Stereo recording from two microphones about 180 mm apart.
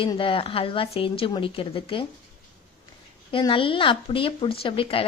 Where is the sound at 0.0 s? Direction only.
30° left (ahead or behind).